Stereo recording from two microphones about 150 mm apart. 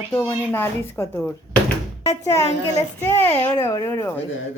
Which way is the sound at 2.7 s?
20° left (ahead or behind).